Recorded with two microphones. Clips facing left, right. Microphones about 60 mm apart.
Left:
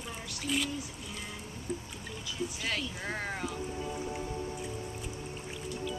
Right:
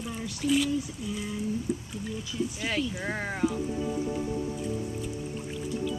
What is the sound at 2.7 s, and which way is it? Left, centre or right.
Speech, centre.